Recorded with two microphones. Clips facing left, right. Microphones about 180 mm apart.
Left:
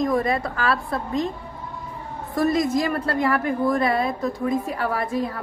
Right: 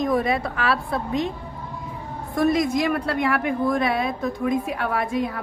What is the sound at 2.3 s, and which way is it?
A woman's voice, centre (ahead or behind).